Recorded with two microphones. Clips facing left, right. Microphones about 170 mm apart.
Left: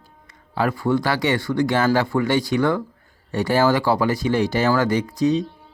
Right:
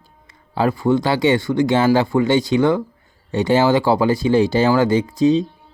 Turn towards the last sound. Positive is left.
turn(degrees=-25)  # may be behind; listen again after turning